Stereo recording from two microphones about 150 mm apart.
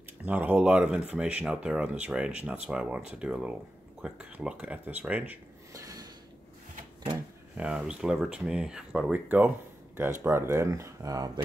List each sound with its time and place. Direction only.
0.2 s speech: 10° right (ahead or behind)
5.8 s a sound: 20° right (ahead or behind)
7.5 s speech: 5° right (ahead or behind); by 11.3 s 25° right (ahead or behind)